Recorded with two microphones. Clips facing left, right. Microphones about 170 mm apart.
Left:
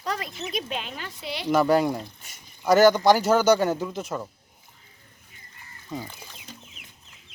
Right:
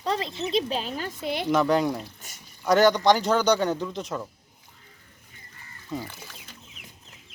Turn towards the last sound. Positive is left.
turn(degrees=-5)  # may be behind; listen again after turning